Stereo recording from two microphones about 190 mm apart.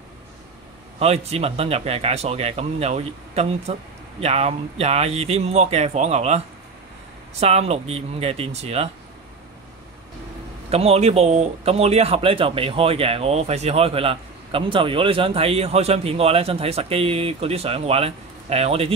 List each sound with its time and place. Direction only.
0.9 s speech: 35° right (ahead or behind)
10.7 s speech: 30° right (ahead or behind)